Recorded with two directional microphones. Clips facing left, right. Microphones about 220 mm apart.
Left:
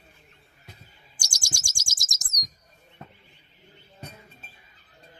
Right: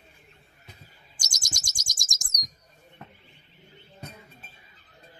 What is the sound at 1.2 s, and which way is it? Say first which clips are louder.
Bird: left 1 dB; 10° left (ahead or behind).